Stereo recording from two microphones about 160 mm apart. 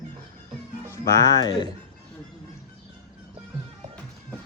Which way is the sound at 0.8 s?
15° left (ahead or behind).